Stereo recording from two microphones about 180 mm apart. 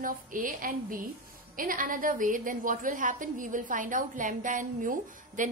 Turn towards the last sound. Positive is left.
turn(degrees=-45)  # may be behind; listen again after turning